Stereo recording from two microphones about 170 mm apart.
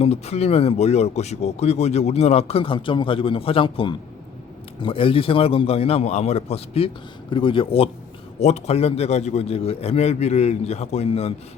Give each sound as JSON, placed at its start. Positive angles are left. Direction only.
{"t": 0.0, "sound": "speech", "side_deg": 40}